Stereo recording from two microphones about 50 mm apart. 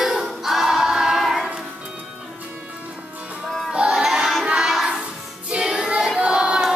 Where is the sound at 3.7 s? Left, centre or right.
Centre.